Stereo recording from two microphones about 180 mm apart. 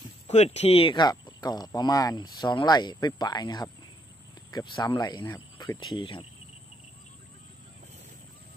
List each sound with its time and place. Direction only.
0.3 s speech: 40° left (ahead or behind)